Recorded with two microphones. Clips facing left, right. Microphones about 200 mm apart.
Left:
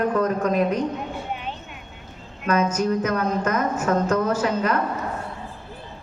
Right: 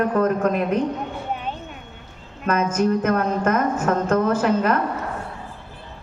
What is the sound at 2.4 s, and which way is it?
A woman's voice, 50° right (ahead or behind).